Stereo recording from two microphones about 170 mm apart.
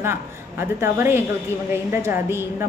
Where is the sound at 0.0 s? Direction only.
15° right (ahead or behind).